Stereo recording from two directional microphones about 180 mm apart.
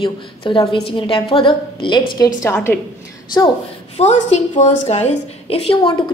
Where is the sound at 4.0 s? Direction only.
40° left (ahead or behind).